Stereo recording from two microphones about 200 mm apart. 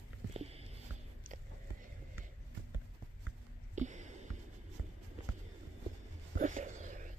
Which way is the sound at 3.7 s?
35° right (ahead or behind).